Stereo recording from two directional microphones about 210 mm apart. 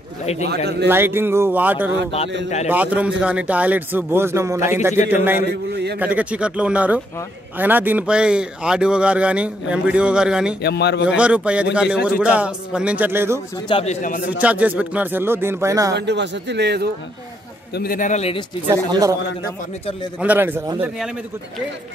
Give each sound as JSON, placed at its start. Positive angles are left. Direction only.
{"t": 0.2, "sound": "a man's voice", "side_deg": 30}
{"t": 0.8, "sound": "a man's voice", "side_deg": -10}
{"t": 5.5, "sound": "speech", "side_deg": -50}
{"t": 5.9, "sound": "a man's voice", "side_deg": -5}
{"t": 10.6, "sound": "a man's voice", "side_deg": 55}
{"t": 11.1, "sound": "a man's voice", "side_deg": -5}
{"t": 13.7, "sound": "a man's voice", "side_deg": 25}
{"t": 14.4, "sound": "a man's voice", "side_deg": -5}
{"t": 15.9, "sound": "speech", "side_deg": -55}
{"t": 17.7, "sound": "a man's voice", "side_deg": 40}
{"t": 18.7, "sound": "a man's voice", "side_deg": -15}
{"t": 20.2, "sound": "a man's voice", "side_deg": -10}